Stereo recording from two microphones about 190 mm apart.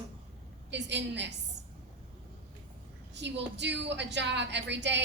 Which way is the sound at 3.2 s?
65° right (ahead or behind).